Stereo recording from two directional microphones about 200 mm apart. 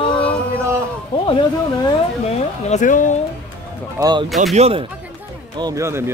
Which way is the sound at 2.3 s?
35° left (ahead or behind).